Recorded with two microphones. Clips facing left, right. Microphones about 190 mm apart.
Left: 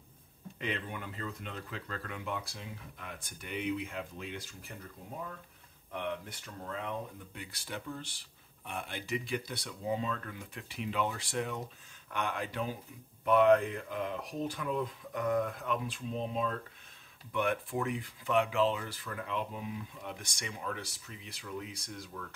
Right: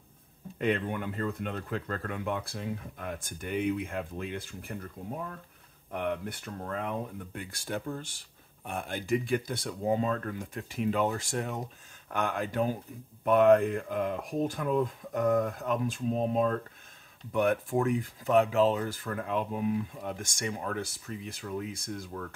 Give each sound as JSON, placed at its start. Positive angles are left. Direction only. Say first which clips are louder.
{"t": 0.6, "sound": "speech", "louder": "right 9 dB", "side_deg": -50}
{"t": 5.9, "sound": "speech", "louder": "right 5 dB", "side_deg": -55}